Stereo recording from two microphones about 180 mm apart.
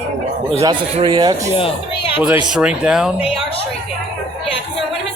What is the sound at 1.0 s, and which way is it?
Speech, 25° right (ahead or behind).